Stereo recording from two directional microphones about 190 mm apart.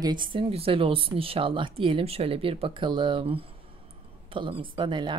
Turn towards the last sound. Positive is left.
turn(degrees=-25)  # may be behind; listen again after turning